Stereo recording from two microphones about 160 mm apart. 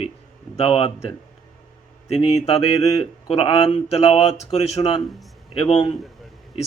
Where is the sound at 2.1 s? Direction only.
40° left (ahead or behind).